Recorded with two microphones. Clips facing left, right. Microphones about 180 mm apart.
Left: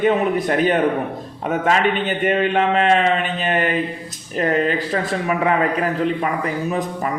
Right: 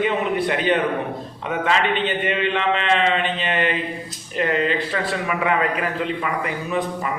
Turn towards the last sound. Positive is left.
turn(degrees=40)  # may be behind; listen again after turning